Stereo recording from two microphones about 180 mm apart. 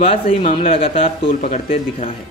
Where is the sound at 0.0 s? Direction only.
30° left (ahead or behind).